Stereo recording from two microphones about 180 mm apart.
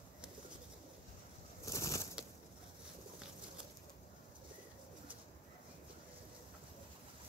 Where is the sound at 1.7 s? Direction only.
15° left (ahead or behind).